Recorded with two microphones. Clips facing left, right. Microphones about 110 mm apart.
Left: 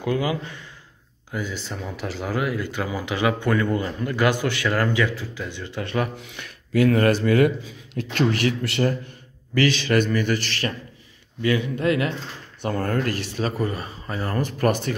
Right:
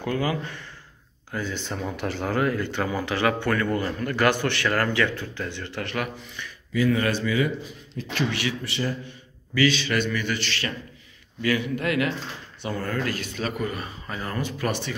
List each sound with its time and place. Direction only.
0.0 s speech: 15° left (ahead or behind)
6.2 s speech: 70° left (ahead or behind)
7.0 s speech: 55° left (ahead or behind)
9.5 s a man's voice: 45° left (ahead or behind)
11.4 s speech: 25° left (ahead or behind)
12.6 s a man's voice: 50° left (ahead or behind)